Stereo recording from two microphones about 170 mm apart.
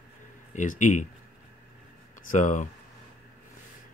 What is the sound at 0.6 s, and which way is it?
Speech, 45° left (ahead or behind).